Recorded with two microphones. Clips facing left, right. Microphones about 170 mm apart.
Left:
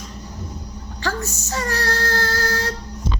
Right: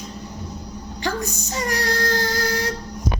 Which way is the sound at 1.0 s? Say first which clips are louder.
Even; 15° right (ahead or behind).